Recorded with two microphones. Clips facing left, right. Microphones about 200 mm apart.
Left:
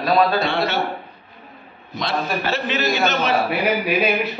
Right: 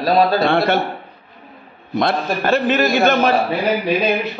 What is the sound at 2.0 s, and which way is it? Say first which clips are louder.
A man's voice: right 5 dB; 55° right (ahead or behind).